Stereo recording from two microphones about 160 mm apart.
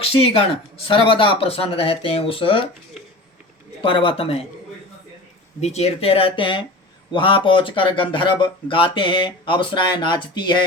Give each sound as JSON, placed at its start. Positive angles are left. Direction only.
{"t": 0.0, "sound": "speech", "side_deg": 35}
{"t": 3.8, "sound": "speech", "side_deg": 30}
{"t": 5.5, "sound": "speech", "side_deg": 45}